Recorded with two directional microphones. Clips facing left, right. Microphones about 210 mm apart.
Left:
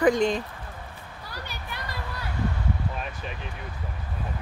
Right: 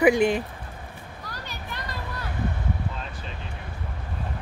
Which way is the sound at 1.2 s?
10° left (ahead or behind).